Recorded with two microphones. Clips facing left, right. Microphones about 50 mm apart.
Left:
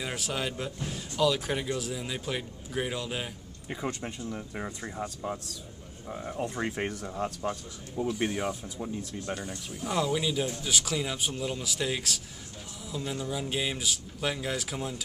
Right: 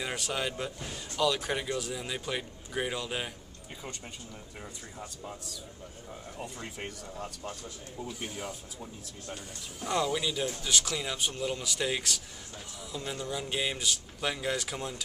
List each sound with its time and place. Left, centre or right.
0.0 s speech: centre
3.7 s speech: left
6.4 s speech: left
9.8 s speech: centre